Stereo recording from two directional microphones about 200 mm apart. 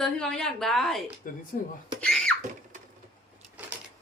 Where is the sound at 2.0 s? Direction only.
5° left (ahead or behind).